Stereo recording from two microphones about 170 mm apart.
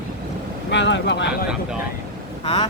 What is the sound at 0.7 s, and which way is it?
Speech, 90° left.